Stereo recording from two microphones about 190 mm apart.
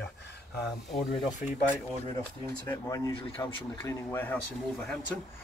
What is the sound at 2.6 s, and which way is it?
Speech, 20° left (ahead or behind).